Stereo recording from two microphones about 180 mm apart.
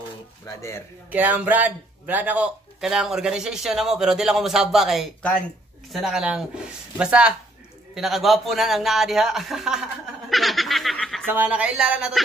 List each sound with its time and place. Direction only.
0.5 s speech: 15° left (ahead or behind)
1.1 s speech: 10° right (ahead or behind)
11.2 s speech: 10° right (ahead or behind)